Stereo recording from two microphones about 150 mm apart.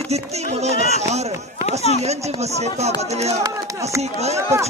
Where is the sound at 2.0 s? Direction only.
45° right (ahead or behind).